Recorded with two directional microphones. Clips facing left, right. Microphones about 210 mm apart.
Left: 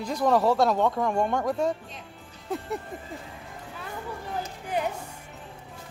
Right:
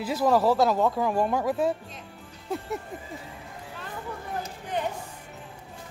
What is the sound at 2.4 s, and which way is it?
Music, centre (ahead or behind).